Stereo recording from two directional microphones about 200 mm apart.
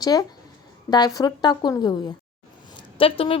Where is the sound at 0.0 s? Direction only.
20° left (ahead or behind).